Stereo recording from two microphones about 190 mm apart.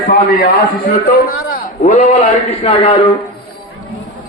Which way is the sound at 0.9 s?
50° left (ahead or behind).